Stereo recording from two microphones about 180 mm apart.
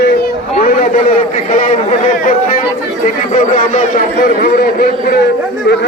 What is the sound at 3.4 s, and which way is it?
A man's voice, 45° left (ahead or behind).